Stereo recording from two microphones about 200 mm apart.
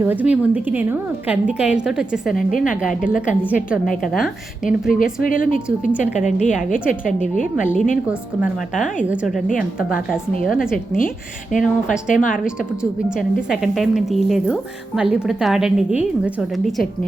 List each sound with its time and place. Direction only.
0.0 s a woman's voice: 10° right (ahead or behind)
4.0 s speech: centre (ahead or behind)
4.9 s a woman's voice: 45° left (ahead or behind)
10.1 s speech: centre (ahead or behind)
11.5 s a woman's voice: 40° left (ahead or behind)
13.3 s speech: centre (ahead or behind)